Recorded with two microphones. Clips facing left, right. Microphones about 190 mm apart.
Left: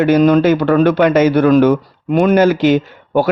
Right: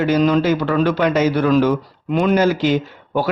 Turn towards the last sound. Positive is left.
turn(degrees=55)  # may be behind; listen again after turning